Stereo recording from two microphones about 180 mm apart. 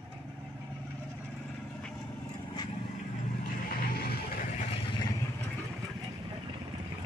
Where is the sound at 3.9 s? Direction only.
60° left (ahead or behind).